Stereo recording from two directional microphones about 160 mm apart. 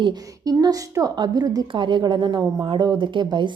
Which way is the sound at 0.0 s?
25° right (ahead or behind).